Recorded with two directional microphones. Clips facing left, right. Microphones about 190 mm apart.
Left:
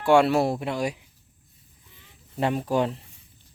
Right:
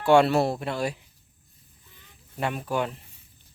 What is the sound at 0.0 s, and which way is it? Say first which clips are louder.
Speech: even; 10° left (ahead or behind).